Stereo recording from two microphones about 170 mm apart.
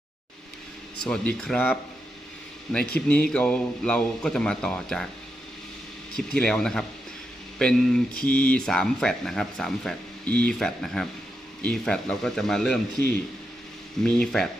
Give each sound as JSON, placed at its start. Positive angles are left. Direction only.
{"t": 1.0, "sound": "speech", "side_deg": 5}
{"t": 6.1, "sound": "speech", "side_deg": 5}
{"t": 14.0, "sound": "speech", "side_deg": 5}